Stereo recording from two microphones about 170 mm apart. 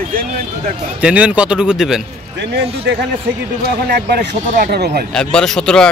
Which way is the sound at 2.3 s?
85° right.